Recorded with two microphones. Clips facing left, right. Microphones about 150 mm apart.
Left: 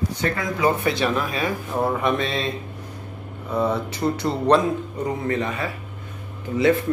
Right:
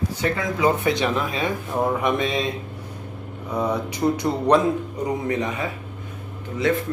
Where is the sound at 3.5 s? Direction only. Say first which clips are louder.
Left 1 dB; 15° right (ahead or behind).